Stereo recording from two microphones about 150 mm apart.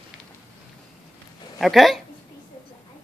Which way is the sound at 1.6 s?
Centre (ahead or behind).